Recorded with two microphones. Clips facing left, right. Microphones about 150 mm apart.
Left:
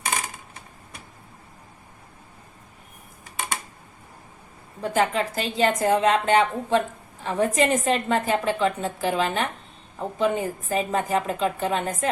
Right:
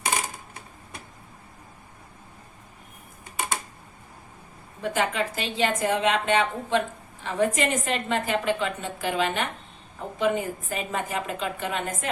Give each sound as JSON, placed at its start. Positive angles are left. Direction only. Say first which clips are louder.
{"t": 4.8, "sound": "a woman's voice", "louder": "left 3 dB", "side_deg": 40}